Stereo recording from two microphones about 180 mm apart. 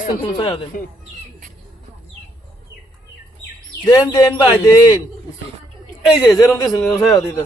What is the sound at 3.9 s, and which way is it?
Speech, 20° left (ahead or behind).